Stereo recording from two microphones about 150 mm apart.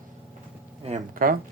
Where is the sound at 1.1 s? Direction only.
70° right (ahead or behind).